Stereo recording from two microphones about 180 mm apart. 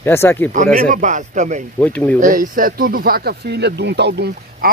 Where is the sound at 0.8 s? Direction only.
45° right (ahead or behind).